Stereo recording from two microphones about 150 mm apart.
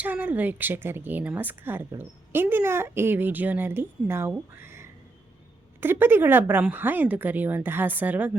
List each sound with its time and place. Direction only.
0.0 s speech: 10° right (ahead or behind)